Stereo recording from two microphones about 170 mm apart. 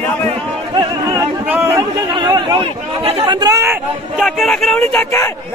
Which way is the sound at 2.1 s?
25° right (ahead or behind).